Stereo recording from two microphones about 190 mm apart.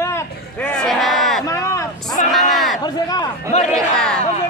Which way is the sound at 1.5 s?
15° left (ahead or behind).